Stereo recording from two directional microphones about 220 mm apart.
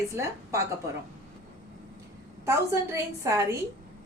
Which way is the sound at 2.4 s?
10° right (ahead or behind).